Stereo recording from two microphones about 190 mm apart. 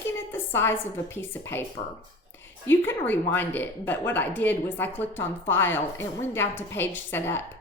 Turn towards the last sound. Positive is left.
turn(degrees=10)  # may be behind; listen again after turning